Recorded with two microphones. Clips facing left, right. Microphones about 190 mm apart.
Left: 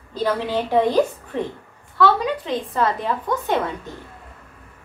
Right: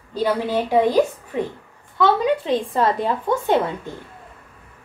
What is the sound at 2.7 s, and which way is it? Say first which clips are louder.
Speech: right 2 dB; 30° right (ahead or behind).